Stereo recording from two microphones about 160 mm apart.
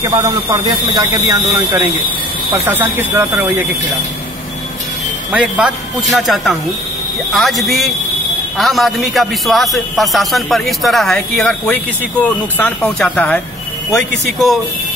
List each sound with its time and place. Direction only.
0.0 s speech: 20° right (ahead or behind)
5.3 s a man's voice: 5° right (ahead or behind)